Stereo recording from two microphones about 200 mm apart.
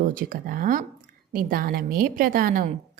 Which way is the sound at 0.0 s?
40° right (ahead or behind).